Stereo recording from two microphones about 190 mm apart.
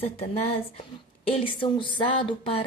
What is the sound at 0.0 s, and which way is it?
A woman's voice, 30° left (ahead or behind).